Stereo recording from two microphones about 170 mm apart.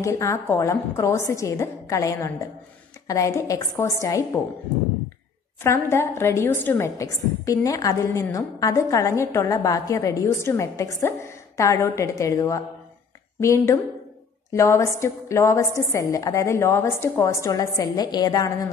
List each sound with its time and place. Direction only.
0.0 s a woman's voice: 15° left (ahead or behind)
5.6 s a woman's voice: 15° left (ahead or behind)